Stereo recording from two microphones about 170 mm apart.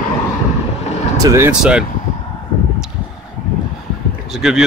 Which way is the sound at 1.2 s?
15° right (ahead or behind).